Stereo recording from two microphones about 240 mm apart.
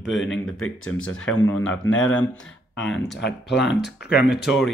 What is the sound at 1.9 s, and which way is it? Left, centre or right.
Speech, left.